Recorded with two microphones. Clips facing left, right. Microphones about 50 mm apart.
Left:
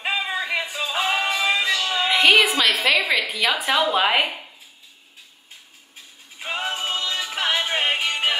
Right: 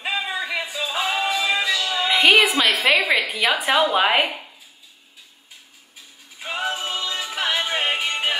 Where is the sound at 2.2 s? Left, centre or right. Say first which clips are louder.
Right 1 dB; centre.